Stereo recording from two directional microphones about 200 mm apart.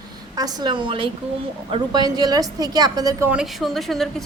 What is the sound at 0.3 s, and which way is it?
A woman's voice, 20° right (ahead or behind).